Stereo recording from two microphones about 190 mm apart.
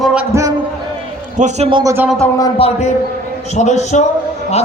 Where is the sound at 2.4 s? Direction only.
30° left (ahead or behind).